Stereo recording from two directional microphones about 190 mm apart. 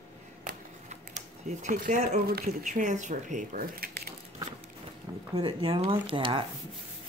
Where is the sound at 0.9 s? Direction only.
35° right (ahead or behind).